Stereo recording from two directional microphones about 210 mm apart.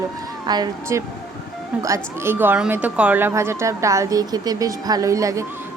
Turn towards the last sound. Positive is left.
turn(degrees=-15)  # may be behind; listen again after turning